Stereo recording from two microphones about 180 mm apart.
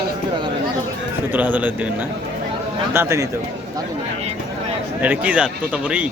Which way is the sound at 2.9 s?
15° right (ahead or behind).